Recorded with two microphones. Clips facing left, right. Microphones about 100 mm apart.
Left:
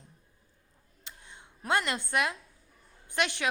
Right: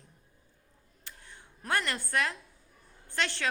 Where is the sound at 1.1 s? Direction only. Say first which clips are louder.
Left 1 dB; 20° left (ahead or behind).